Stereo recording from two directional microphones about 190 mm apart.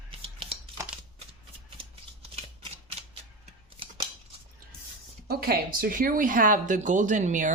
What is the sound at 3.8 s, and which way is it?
Scissors, 30° right (ahead or behind).